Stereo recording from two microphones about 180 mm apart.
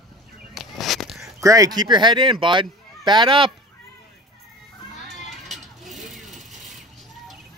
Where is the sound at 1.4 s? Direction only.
20° right (ahead or behind).